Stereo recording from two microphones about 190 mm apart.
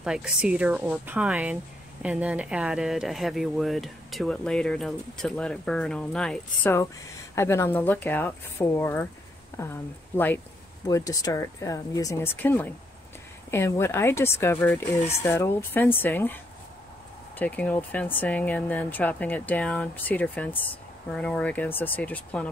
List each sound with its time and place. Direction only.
0.0 s speech: 5° right (ahead or behind)
17.4 s speech: 5° left (ahead or behind)